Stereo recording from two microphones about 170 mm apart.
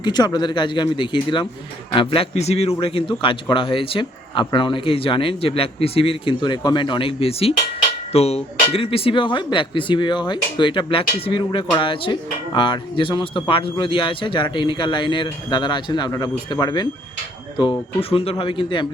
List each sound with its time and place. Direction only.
0.0 s speech: 25° left (ahead or behind)